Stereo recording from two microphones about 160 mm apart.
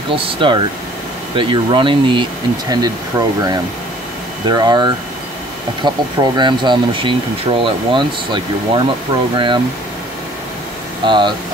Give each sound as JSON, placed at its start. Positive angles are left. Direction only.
{"t": 0.1, "sound": "speech", "side_deg": -35}
{"t": 11.1, "sound": "speech", "side_deg": -30}